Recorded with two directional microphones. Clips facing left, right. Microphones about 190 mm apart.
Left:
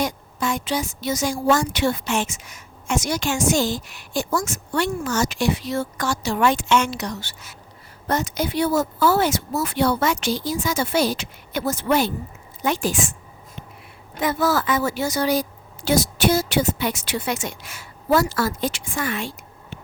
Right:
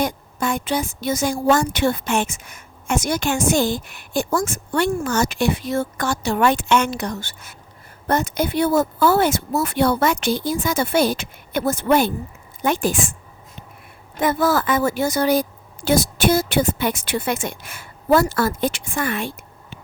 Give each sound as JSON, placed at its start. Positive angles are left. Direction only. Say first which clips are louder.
{"t": 0.0, "sound": "a woman's voice", "louder": "right 2 dB", "side_deg": -55}
{"t": 14.2, "sound": "a woman's voice", "louder": "right 2 dB", "side_deg": -50}